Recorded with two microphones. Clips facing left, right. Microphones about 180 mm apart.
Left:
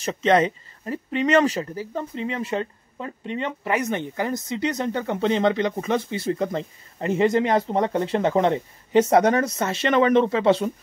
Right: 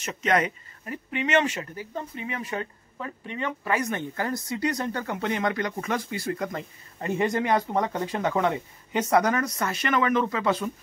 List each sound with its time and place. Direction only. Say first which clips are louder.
0.0 s speech: left 6 dB; 30° left (ahead or behind)